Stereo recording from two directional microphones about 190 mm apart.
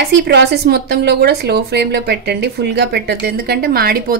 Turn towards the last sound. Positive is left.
turn(degrees=-55)  # may be behind; listen again after turning